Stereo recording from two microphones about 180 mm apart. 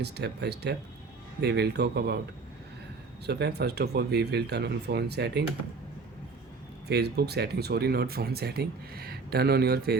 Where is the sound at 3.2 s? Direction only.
65° right (ahead or behind).